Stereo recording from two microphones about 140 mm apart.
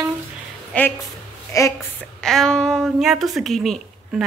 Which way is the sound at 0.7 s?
10° left (ahead or behind).